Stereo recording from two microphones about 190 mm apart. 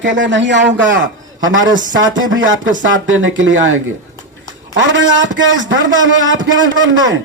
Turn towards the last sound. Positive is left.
turn(degrees=-80)